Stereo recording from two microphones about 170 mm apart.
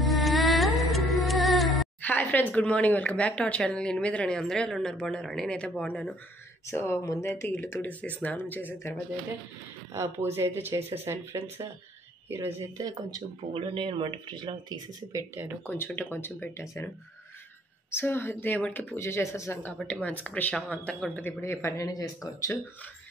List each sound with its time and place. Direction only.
0.0 s music: centre (ahead or behind)
2.0 s speech: 10° left (ahead or behind)
9.9 s speech: 15° right (ahead or behind)
15.1 s speech: 15° right (ahead or behind)
15.7 s speech: 10° left (ahead or behind)
17.9 s speech: 15° left (ahead or behind)